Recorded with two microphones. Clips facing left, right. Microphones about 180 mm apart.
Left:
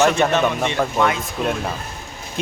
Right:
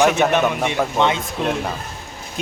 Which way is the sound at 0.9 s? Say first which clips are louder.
Right 1 dB; 25° right (ahead or behind).